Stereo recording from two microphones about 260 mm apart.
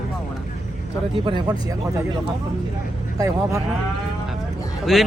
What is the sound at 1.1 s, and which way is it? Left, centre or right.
Speech, centre.